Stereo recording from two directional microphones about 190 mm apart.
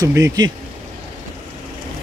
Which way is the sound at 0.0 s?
15° right (ahead or behind).